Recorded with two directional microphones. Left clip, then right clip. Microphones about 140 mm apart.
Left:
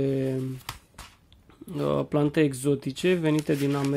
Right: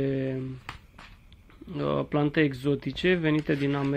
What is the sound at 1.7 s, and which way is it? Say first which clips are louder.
Speech: left 2 dB; 30° left (ahead or behind).